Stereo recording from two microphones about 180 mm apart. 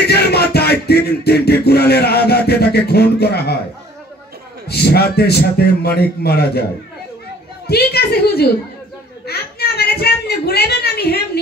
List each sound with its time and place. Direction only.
0.0 s music: 65° left (ahead or behind)
4.6 s a man's voice: 60° left (ahead or behind)
7.6 s a man's voice: 60° left (ahead or behind)
9.2 s a sound: 60° left (ahead or behind)